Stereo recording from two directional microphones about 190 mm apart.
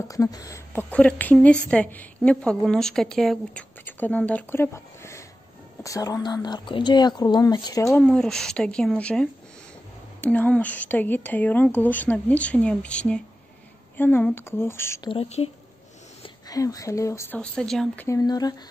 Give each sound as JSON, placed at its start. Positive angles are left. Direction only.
{"t": 0.1, "sound": "a woman's voice", "side_deg": 20}
{"t": 8.0, "sound": "a woman's voice", "side_deg": 5}
{"t": 15.0, "sound": "speech", "side_deg": 30}
{"t": 16.2, "sound": "speech", "side_deg": 20}
{"t": 18.0, "sound": "speech", "side_deg": 20}